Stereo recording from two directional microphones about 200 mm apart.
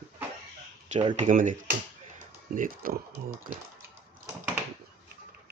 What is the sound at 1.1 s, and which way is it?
Speech, 40° right (ahead or behind).